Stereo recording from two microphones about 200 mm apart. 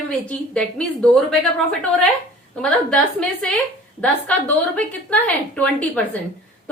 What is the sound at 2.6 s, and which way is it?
A woman's voice, 5° left (ahead or behind).